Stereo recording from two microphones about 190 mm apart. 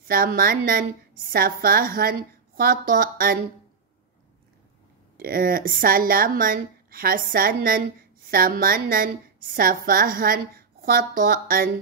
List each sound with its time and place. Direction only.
0.1 s a woman's voice: 50° right (ahead or behind)
5.1 s a woman's voice: 50° right (ahead or behind)